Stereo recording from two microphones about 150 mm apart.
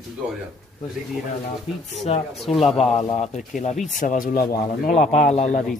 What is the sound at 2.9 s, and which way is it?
Speech, 35° left (ahead or behind).